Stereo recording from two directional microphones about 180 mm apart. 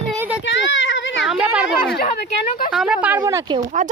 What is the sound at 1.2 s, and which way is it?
Speech, 5° right (ahead or behind).